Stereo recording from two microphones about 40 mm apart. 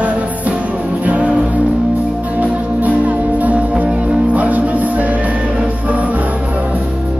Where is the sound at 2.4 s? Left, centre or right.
Right.